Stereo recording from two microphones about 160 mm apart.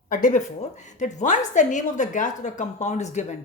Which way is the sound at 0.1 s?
55° left (ahead or behind).